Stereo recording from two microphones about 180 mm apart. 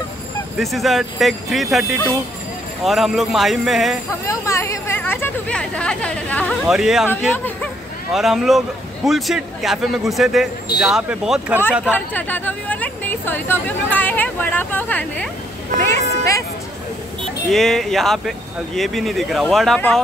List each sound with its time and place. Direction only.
0.6 s a man's voice: centre (ahead or behind)
4.3 s speech: 15° left (ahead or behind); by 7.1 s centre (ahead or behind)
8.1 s a man's voice: centre (ahead or behind)
11.9 s speech: 10° left (ahead or behind)
17.5 s a man's voice: centre (ahead or behind)